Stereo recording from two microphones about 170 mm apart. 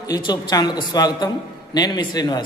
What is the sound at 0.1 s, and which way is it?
A man's voice, 25° left (ahead or behind).